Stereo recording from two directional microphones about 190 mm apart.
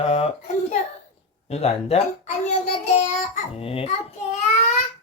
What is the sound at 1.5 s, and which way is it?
Speech, 35° left (ahead or behind).